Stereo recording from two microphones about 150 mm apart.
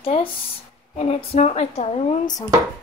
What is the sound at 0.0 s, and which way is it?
A woman's voice, 40° left (ahead or behind).